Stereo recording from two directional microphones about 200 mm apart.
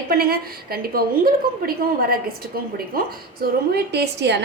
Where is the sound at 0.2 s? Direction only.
50° right (ahead or behind).